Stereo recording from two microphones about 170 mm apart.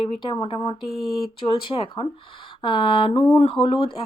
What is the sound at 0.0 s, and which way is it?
Speech, 30° left (ahead or behind).